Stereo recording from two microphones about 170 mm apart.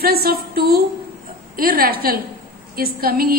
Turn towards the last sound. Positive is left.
turn(degrees=-60)  # may be behind; listen again after turning